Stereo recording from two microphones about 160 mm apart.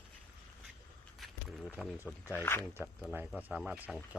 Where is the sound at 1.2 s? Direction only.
Centre (ahead or behind).